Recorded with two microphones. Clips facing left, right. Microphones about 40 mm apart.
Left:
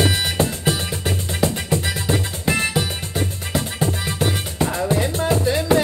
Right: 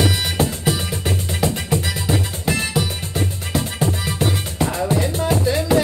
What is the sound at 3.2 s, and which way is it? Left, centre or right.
Music, centre.